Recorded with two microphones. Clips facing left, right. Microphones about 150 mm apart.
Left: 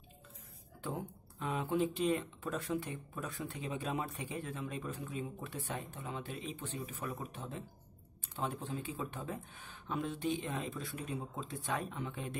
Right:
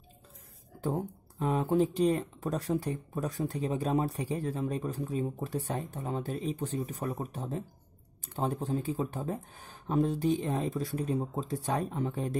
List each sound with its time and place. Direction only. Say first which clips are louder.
0.7 s speech: right 8 dB; 40° right (ahead or behind)